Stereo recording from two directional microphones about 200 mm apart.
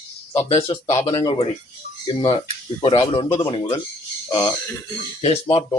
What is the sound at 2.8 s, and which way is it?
Speech, 25° left (ahead or behind).